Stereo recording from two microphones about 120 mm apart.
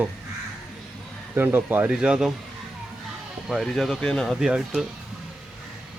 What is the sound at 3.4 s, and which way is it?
Speech, centre (ahead or behind).